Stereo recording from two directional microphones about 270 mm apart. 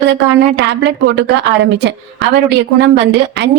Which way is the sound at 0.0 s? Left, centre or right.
Right.